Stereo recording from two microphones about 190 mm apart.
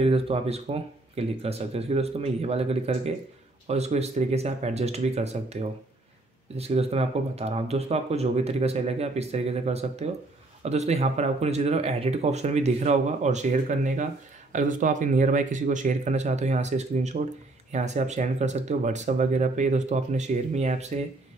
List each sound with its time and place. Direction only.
0.0 s speech: 30° right (ahead or behind)